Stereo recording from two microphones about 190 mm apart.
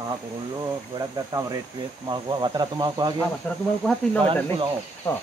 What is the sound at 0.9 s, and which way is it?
Speech, 20° right (ahead or behind).